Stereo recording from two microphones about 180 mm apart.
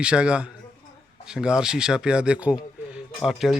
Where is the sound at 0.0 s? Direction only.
5° right (ahead or behind).